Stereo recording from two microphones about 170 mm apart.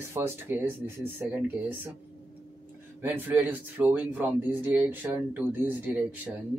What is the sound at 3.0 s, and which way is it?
Speech, 10° right (ahead or behind).